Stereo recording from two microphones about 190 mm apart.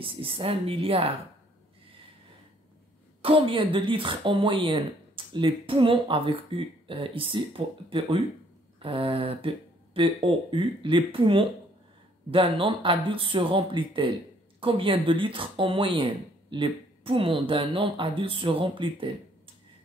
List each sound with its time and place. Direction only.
0.0 s speech: 30° right (ahead or behind)
3.2 s speech: 30° right (ahead or behind)